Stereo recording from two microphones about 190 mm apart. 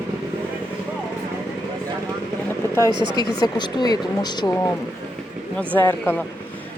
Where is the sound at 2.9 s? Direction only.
25° right (ahead or behind).